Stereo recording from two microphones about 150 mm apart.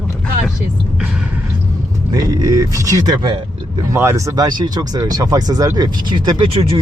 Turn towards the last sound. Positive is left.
turn(degrees=-35)  # may be behind; listen again after turning